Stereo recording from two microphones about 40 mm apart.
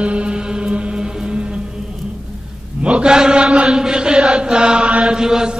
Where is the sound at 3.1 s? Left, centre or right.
Centre.